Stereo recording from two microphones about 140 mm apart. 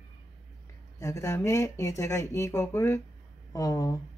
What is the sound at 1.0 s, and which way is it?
Speech, 20° left (ahead or behind).